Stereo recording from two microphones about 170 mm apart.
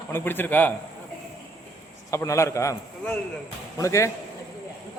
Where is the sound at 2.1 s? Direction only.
15° left (ahead or behind).